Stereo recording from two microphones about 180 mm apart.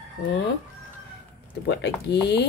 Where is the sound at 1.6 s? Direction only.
70° left (ahead or behind).